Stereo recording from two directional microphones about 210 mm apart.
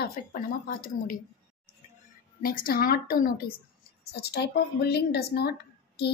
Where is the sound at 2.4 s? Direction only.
45° left (ahead or behind).